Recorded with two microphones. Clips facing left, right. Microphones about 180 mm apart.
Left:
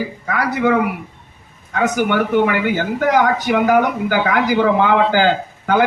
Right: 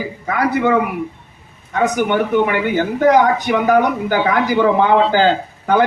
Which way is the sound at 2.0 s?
25° right (ahead or behind).